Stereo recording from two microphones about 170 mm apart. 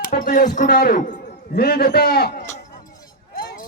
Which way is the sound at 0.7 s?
70° left (ahead or behind).